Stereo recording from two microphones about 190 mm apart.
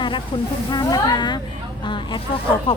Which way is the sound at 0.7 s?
20° left (ahead or behind).